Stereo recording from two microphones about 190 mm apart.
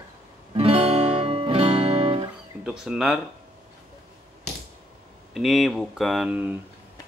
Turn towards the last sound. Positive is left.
turn(degrees=-5)  # may be behind; listen again after turning